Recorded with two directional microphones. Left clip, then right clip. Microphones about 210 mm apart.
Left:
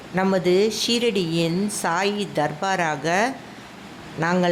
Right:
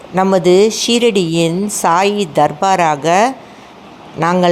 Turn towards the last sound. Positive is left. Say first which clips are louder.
# right 9 dB
turn(degrees=-10)  # may be behind; listen again after turning